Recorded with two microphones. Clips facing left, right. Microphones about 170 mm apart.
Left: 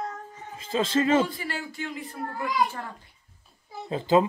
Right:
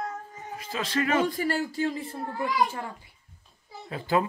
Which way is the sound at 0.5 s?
25° left (ahead or behind).